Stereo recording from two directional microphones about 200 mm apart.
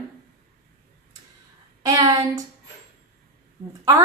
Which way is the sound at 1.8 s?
20° right (ahead or behind).